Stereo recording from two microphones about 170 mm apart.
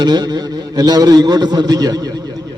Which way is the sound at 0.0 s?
25° right (ahead or behind).